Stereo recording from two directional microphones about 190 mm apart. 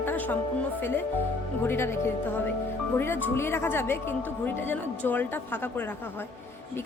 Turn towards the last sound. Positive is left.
turn(degrees=10)  # may be behind; listen again after turning